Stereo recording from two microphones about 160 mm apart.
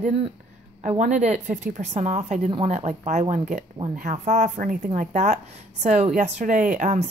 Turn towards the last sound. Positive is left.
turn(degrees=-50)  # may be behind; listen again after turning